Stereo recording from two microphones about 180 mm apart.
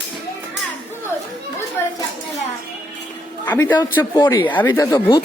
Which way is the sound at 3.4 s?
10° left (ahead or behind).